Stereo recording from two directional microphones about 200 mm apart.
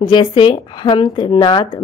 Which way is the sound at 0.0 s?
25° left (ahead or behind).